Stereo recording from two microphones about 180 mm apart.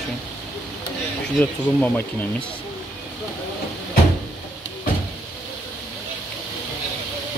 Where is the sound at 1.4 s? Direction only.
10° left (ahead or behind).